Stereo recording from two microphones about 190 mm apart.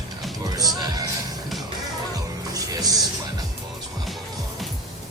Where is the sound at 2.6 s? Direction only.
20° right (ahead or behind).